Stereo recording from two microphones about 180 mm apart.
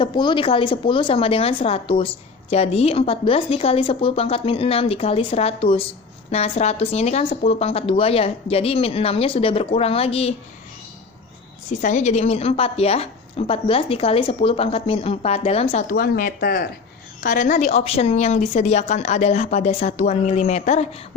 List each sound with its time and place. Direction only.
0.0 s a woman's voice: 25° left (ahead or behind)
11.8 s a woman's voice: 40° left (ahead or behind)
15.9 s a woman's voice: 50° left (ahead or behind)